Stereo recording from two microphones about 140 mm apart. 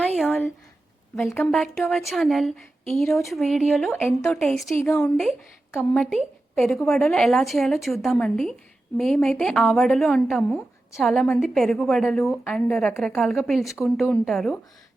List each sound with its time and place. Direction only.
0.2 s a sound: 5° right (ahead or behind)
1.2 s a woman's voice: 5° left (ahead or behind)
4.7 s speech: 15° left (ahead or behind)
5.7 s a woman's voice: 5° left (ahead or behind)